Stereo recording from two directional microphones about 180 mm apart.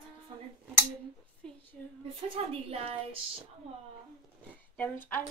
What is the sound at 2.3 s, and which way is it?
Speech, 35° right (ahead or behind).